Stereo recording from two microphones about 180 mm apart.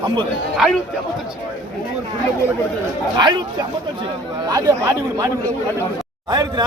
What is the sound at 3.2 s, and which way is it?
Speech, 25° right (ahead or behind).